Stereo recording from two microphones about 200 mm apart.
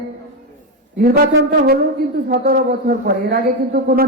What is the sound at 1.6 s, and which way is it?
Speech, 50° right (ahead or behind).